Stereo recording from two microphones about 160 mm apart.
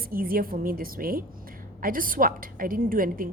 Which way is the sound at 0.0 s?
65° right (ahead or behind).